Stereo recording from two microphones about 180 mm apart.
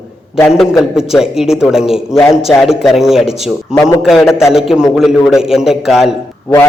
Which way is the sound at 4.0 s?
Centre (ahead or behind).